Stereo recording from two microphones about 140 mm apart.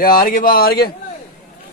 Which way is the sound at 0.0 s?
90° left.